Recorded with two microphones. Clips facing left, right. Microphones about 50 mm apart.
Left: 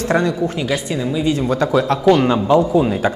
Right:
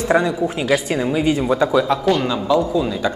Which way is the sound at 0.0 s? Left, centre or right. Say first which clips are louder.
Even; centre.